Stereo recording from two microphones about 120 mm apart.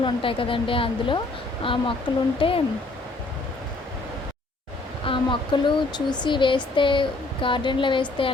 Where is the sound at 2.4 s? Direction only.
45° left (ahead or behind).